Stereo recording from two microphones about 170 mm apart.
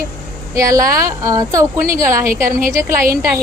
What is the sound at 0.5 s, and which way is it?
A woman's voice, 20° right (ahead or behind).